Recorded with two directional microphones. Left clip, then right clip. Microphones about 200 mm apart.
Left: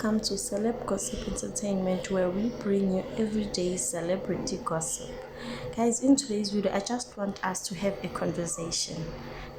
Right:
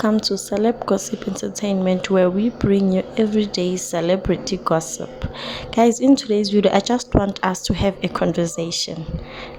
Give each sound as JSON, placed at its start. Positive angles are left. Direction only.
{"t": 0.0, "sound": "a woman's voice", "side_deg": -35}